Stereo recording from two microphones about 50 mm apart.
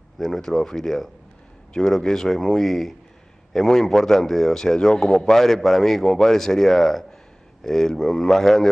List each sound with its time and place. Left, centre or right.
0.2 s a man's voice: centre